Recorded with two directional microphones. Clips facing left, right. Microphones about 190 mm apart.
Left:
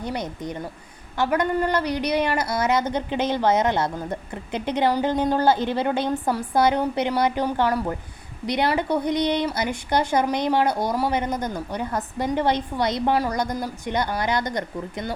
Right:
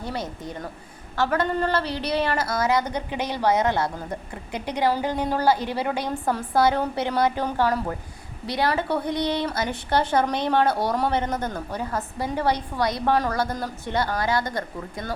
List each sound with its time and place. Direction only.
0.0 s a woman's voice: 15° left (ahead or behind)